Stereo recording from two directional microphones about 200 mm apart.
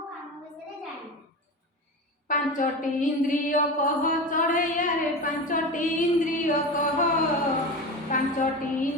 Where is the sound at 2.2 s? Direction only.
40° left (ahead or behind).